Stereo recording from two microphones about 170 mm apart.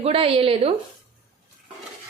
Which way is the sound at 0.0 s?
35° right (ahead or behind).